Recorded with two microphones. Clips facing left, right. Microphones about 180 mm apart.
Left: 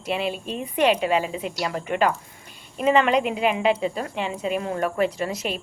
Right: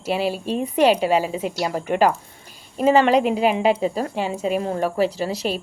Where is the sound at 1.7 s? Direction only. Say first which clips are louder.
Right 4 dB; 5° right (ahead or behind).